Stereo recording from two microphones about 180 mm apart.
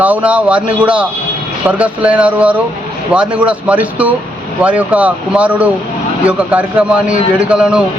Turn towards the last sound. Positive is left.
turn(degrees=-5)  # may be behind; listen again after turning